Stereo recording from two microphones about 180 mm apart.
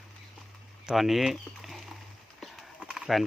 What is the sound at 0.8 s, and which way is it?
Speech, centre (ahead or behind).